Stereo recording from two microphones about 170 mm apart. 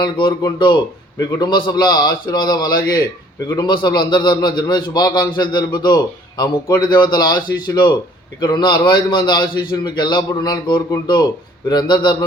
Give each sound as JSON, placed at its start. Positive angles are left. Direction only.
{"t": 0.0, "sound": "a man's voice", "side_deg": 25}